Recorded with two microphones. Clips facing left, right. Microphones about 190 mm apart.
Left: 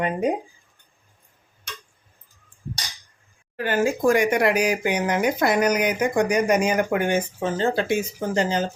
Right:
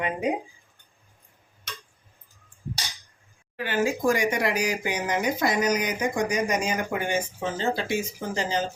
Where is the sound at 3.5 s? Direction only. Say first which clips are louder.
Left 3 dB; 45° left (ahead or behind).